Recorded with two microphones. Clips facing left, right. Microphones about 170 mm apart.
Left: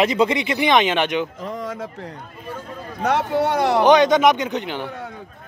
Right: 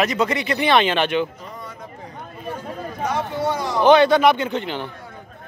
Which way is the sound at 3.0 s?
70° left (ahead or behind).